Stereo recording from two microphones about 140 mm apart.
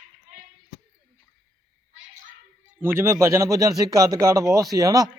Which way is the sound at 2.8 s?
15° right (ahead or behind).